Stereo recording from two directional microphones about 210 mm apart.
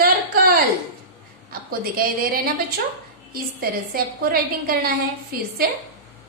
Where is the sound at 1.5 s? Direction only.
45° right (ahead or behind).